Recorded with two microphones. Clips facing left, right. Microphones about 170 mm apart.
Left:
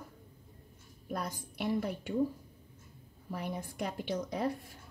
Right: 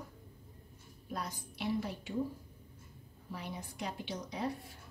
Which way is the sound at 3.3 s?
55° left (ahead or behind).